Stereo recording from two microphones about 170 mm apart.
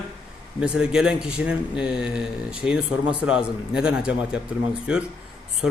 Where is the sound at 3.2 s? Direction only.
5° right (ahead or behind).